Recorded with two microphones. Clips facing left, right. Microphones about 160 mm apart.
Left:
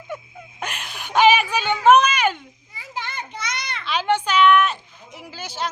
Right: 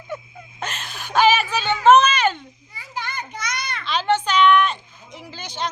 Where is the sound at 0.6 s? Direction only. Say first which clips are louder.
Right 1 dB; 10° left (ahead or behind).